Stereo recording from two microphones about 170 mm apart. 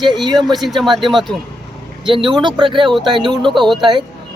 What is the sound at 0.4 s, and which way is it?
Speech, centre (ahead or behind).